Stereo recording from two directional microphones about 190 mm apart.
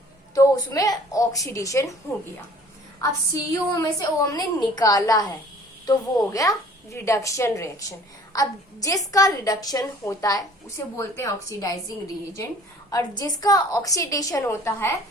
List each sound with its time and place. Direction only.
0.3 s a woman's voice: 20° left (ahead or behind)
3.5 s a woman's voice: 20° left (ahead or behind)